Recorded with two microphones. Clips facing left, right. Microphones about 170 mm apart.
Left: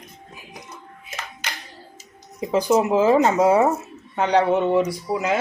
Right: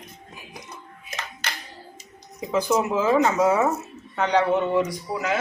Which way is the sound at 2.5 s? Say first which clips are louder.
Left 4 dB; 30° left (ahead or behind).